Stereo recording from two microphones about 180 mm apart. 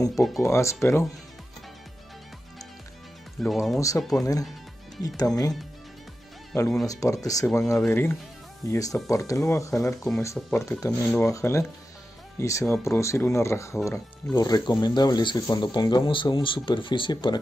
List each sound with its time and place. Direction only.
0.1 s speech: centre (ahead or behind)
0.4 s speech: 15° left (ahead or behind)
3.4 s speech: centre (ahead or behind)
5.0 s speech: 20° left (ahead or behind)
6.9 s speech: 20° left (ahead or behind)